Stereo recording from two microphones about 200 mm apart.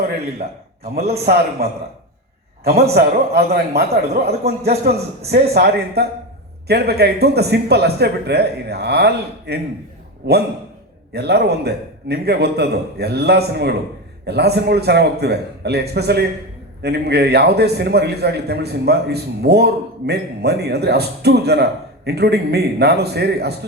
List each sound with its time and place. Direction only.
0.9 s a man's voice: 50° right (ahead or behind)
2.9 s a man's voice: 50° right (ahead or behind)